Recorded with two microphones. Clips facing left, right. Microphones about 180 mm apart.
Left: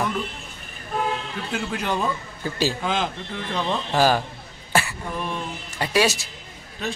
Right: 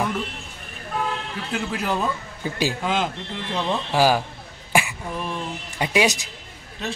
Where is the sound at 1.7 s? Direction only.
5° right (ahead or behind).